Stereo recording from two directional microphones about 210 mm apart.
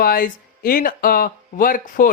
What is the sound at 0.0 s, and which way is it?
Speech, 45° left (ahead or behind).